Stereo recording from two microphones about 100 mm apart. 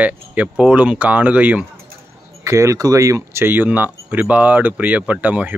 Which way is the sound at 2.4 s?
30° right (ahead or behind).